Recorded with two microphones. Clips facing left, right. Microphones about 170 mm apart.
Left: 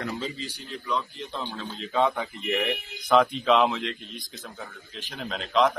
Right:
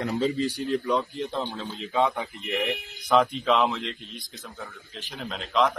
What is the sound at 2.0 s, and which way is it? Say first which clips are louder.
A man's voice: even; centre (ahead or behind).